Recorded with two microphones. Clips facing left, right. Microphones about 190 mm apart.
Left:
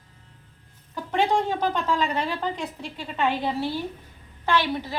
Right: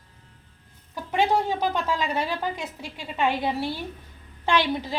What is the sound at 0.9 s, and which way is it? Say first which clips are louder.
A woman's voice: even; 10° right (ahead or behind).